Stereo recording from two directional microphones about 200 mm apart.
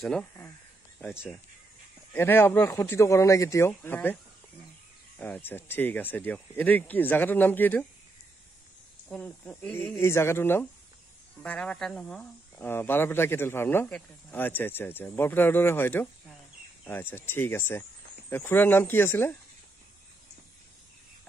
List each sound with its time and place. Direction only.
0.0 s speech: 5° left (ahead or behind)
2.1 s speech: 10° left (ahead or behind)
5.2 s speech: 10° left (ahead or behind)
9.1 s speech: 5° left (ahead or behind)